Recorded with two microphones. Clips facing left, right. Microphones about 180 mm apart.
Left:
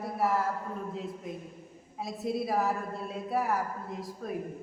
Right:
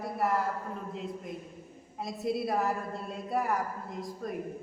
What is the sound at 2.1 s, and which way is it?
A woman's voice, centre (ahead or behind).